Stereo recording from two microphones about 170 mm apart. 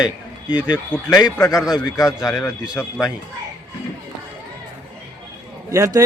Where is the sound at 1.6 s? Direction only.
5° right (ahead or behind).